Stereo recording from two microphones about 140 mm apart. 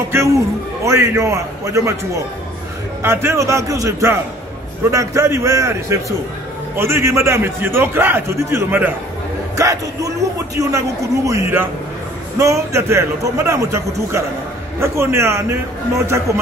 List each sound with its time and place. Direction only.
0.8 s a man's voice: 20° right (ahead or behind)